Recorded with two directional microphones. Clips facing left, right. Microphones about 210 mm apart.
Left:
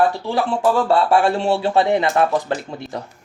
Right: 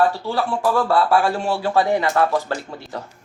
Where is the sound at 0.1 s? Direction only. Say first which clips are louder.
Left 2 dB; 20° left (ahead or behind).